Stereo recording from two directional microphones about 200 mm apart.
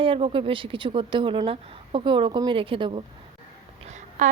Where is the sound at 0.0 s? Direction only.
25° right (ahead or behind).